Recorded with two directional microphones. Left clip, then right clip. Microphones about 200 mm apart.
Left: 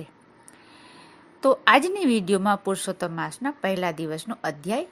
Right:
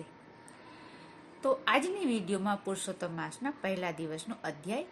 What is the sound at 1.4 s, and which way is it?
A woman's voice, 50° left (ahead or behind).